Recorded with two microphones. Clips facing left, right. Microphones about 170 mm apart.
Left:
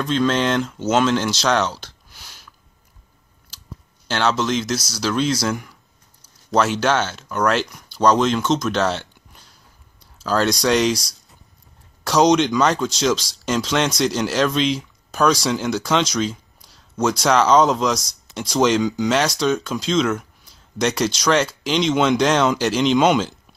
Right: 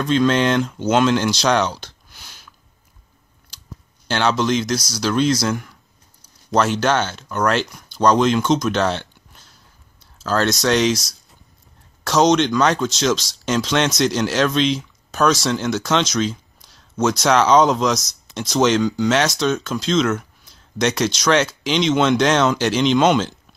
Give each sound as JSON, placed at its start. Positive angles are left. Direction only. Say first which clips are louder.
{"t": 0.0, "sound": "speech", "louder": "right 2 dB", "side_deg": 0}
{"t": 4.1, "sound": "speech", "louder": "right 2 dB", "side_deg": 0}
{"t": 10.2, "sound": "speech", "louder": "even", "side_deg": 10}
{"t": 12.0, "sound": "speech", "louder": "even", "side_deg": 10}